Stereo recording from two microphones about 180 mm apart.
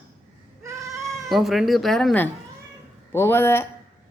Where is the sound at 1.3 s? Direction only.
Centre (ahead or behind).